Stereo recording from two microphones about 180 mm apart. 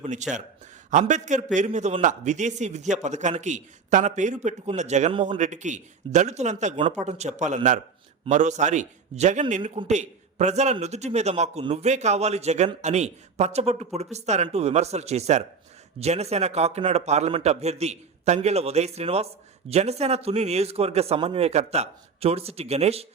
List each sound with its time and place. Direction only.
0.0 s a man's voice: 40° right (ahead or behind)